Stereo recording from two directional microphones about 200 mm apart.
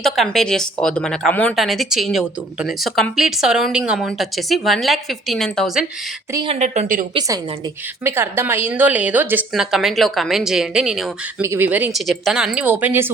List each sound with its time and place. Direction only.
0.0 s speech: centre (ahead or behind)
6.3 s a woman's voice: 25° right (ahead or behind)
6.6 s a woman's voice: 40° right (ahead or behind)
7.1 s a woman's voice: 20° right (ahead or behind)